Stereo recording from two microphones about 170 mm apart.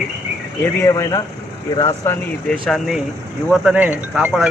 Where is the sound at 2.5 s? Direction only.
5° left (ahead or behind).